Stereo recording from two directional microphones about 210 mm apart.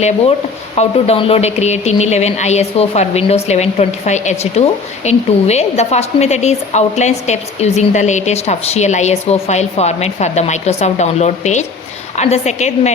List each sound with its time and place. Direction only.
0.8 s speech: 30° left (ahead or behind)